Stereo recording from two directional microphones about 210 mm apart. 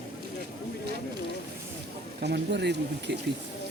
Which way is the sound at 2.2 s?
55° right (ahead or behind).